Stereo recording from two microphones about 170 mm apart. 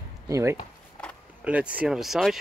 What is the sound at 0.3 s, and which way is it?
Speech, 15° right (ahead or behind).